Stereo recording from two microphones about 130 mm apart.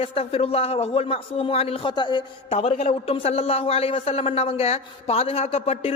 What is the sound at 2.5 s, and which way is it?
A man's voice, 55° left (ahead or behind).